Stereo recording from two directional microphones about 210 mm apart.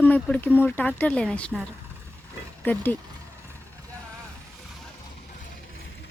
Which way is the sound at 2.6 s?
10° left (ahead or behind).